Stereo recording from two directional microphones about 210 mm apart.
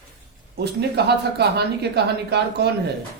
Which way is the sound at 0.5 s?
50° right (ahead or behind).